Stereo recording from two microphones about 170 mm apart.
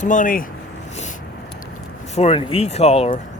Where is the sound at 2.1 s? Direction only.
35° left (ahead or behind).